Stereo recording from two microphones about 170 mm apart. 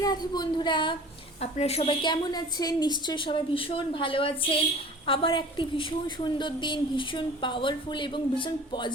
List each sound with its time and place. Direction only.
0.0 s a woman's voice: 25° left (ahead or behind)
1.4 s a woman's voice: 40° left (ahead or behind)